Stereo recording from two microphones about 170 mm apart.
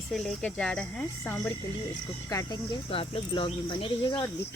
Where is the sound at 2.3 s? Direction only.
20° left (ahead or behind).